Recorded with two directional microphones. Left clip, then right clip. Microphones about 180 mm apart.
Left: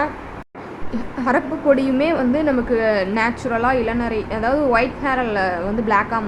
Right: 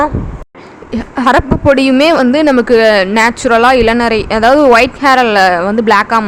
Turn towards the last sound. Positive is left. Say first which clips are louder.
# right 9 dB
turn(degrees=-55)  # may be behind; listen again after turning